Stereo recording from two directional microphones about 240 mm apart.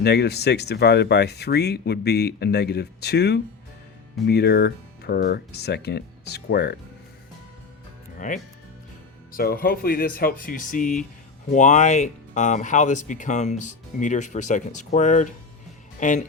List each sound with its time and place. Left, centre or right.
0.0 s speech: left
8.2 s speech: left